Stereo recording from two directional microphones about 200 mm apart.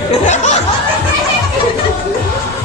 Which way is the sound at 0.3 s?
35° left (ahead or behind).